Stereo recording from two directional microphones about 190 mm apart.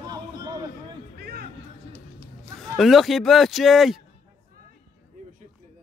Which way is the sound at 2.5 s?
Centre (ahead or behind).